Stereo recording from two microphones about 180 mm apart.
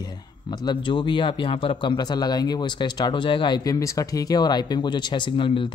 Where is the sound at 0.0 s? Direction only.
20° left (ahead or behind).